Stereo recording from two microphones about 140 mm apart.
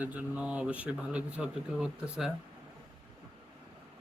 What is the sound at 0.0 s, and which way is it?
Speech, 10° right (ahead or behind).